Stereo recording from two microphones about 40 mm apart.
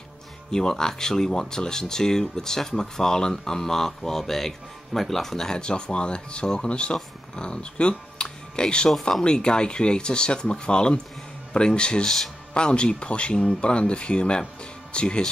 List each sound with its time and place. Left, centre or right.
0.5 s speech: centre